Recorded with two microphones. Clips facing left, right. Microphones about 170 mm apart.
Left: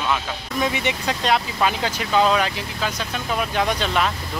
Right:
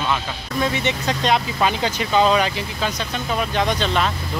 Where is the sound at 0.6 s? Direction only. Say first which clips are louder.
Right 1 dB; 10° left (ahead or behind).